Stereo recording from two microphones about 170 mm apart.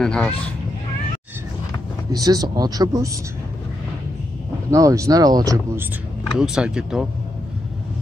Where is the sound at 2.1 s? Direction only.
20° right (ahead or behind).